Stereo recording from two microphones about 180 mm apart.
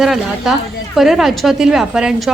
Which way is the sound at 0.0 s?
Centre (ahead or behind).